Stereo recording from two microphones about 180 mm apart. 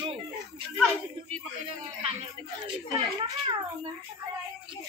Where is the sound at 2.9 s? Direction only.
20° right (ahead or behind).